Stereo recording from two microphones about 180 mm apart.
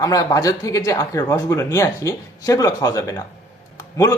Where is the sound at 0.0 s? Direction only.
20° left (ahead or behind).